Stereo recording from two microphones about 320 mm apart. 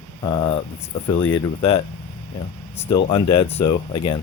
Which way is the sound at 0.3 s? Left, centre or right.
Centre.